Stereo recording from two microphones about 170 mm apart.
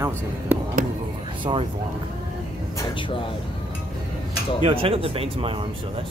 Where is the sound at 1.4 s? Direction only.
30° right (ahead or behind).